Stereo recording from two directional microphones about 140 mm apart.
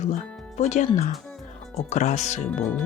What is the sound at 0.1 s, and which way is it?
Speech, 55° left (ahead or behind).